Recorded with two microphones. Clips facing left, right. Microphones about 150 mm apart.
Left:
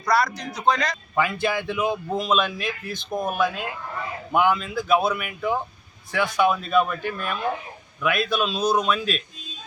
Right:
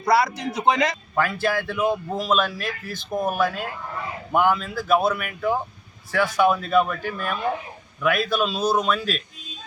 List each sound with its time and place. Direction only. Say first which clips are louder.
0.0 s a man's voice: right 2 dB; 25° right (ahead or behind)
1.1 s a man's voice: left 3 dB; centre (ahead or behind)